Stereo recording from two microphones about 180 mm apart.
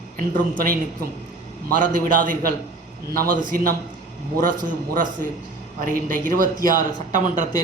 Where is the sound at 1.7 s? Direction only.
50° right (ahead or behind).